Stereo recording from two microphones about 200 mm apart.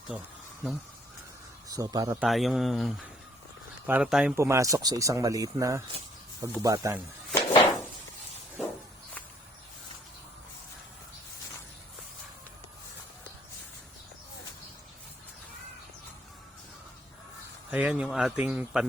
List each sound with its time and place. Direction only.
0.1 s a man's voice: 5° right (ahead or behind)
1.6 s a man's voice: 20° right (ahead or behind)
2.2 s a man's voice: centre (ahead or behind)
4.4 s speech: 15° right (ahead or behind)
7.3 s a sound: 20° left (ahead or behind)
17.7 s a man's voice: 5° right (ahead or behind)